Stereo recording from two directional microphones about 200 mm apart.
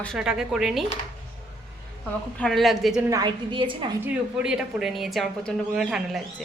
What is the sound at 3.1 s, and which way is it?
Speech, 20° right (ahead or behind).